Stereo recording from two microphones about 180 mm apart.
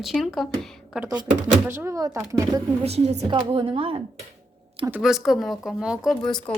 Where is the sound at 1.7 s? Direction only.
15° right (ahead or behind).